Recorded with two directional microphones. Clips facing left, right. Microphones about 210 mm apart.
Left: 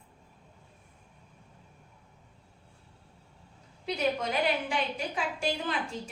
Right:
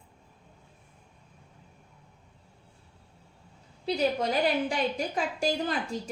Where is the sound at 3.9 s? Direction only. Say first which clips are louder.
Right 3 dB; 35° right (ahead or behind).